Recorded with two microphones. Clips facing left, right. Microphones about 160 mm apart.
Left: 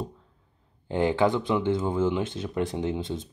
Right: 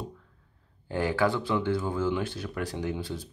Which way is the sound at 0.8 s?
20° left (ahead or behind).